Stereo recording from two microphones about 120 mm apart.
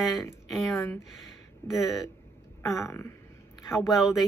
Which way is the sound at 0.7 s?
20° left (ahead or behind).